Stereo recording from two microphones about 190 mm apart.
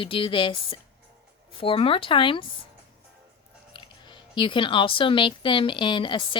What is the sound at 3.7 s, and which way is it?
Speech, 25° left (ahead or behind).